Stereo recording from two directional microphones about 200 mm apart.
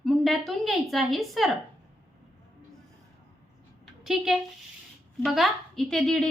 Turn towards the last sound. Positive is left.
turn(degrees=0)  # may be behind; listen again after turning